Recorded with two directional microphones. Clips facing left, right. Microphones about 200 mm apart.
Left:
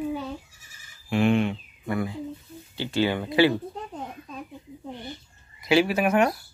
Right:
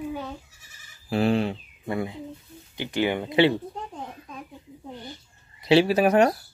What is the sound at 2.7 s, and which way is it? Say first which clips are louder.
Speech: even; 20° right (ahead or behind).